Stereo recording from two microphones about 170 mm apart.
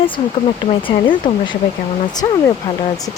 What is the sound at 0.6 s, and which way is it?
Speech, 30° left (ahead or behind).